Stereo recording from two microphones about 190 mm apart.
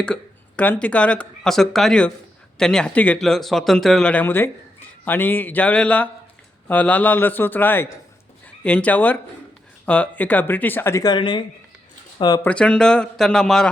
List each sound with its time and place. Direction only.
0.0 s speech: 5° left (ahead or behind)
12.5 s speech: 5° left (ahead or behind)